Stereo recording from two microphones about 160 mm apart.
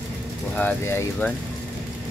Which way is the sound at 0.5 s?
15° left (ahead or behind).